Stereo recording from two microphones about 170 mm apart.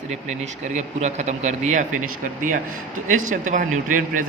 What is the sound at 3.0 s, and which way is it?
A man's voice, 45° right (ahead or behind).